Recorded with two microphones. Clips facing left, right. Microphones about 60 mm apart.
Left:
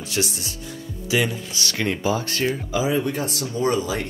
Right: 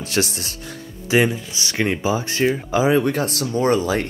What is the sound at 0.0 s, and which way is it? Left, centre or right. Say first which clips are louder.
Speech: right 4 dB; right.